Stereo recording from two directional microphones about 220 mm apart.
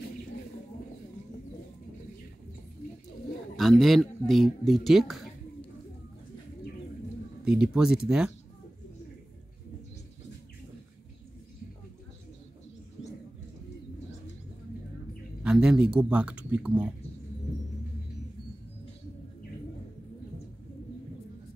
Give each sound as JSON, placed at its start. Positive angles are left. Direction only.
{"t": 3.5, "sound": "speech", "side_deg": 0}
{"t": 7.4, "sound": "speech", "side_deg": -5}
{"t": 15.4, "sound": "speech", "side_deg": -5}